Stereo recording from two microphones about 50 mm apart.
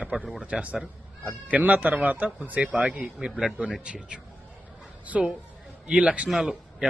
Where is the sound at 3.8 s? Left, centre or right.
Right.